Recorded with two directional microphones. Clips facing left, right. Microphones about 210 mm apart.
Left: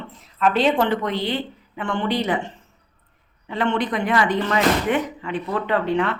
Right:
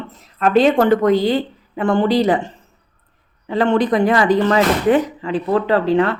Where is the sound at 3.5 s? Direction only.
35° right (ahead or behind).